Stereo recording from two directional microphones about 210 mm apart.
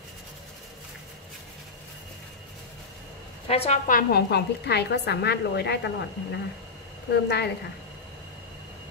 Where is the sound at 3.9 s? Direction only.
45° left (ahead or behind).